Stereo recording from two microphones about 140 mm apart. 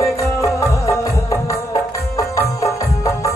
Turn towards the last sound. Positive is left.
turn(degrees=25)  # may be behind; listen again after turning